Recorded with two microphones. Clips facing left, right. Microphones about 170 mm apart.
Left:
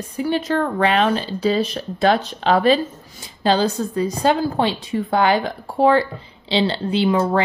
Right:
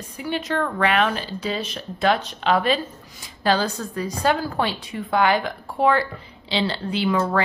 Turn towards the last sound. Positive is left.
turn(degrees=25)  # may be behind; listen again after turning